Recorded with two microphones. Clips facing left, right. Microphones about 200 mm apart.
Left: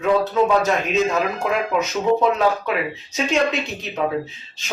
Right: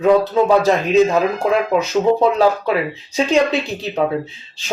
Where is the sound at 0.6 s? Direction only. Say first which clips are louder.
Right 6 dB; 35° right (ahead or behind).